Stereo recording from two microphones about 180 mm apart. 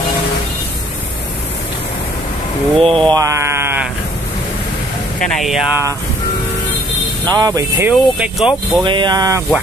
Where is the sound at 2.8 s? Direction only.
30° right (ahead or behind); by 3.9 s 15° right (ahead or behind).